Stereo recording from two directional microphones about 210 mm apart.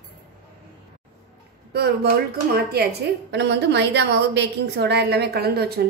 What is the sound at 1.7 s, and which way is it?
A woman's voice, 50° right (ahead or behind).